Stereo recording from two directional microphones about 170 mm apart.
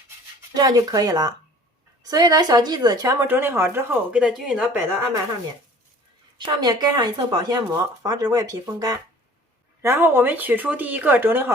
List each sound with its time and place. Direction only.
0.5 s a woman's voice: 20° right (ahead or behind); by 4.8 s 5° right (ahead or behind)
6.4 s a woman's voice: 25° right (ahead or behind)